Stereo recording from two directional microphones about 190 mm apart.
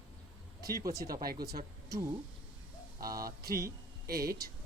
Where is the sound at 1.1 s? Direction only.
50° right (ahead or behind).